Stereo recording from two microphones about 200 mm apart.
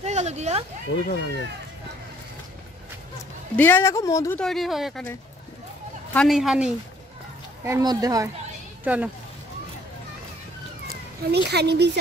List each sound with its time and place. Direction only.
0.0 s speech: 35° right (ahead or behind)
0.9 s speech: 70° left (ahead or behind)
3.5 s speech: 10° left (ahead or behind)
4.4 s speech: centre (ahead or behind)
6.1 s speech: centre (ahead or behind)
7.6 s speech: 15° right (ahead or behind)
10.9 s speech: 55° right (ahead or behind)